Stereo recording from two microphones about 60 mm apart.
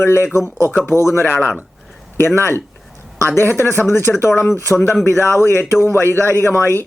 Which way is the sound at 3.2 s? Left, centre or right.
Left.